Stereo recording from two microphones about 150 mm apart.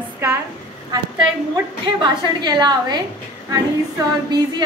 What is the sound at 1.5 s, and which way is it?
A woman's voice, 30° right (ahead or behind).